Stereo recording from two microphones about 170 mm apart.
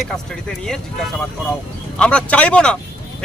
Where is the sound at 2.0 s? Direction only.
5° left (ahead or behind).